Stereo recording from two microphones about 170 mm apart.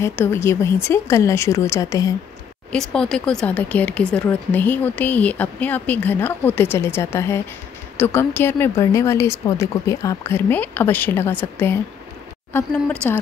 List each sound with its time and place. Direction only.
0.0 s speech: 15° left (ahead or behind)
2.7 s speech: 5° left (ahead or behind)